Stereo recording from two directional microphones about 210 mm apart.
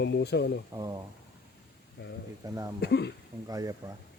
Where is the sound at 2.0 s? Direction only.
50° left (ahead or behind).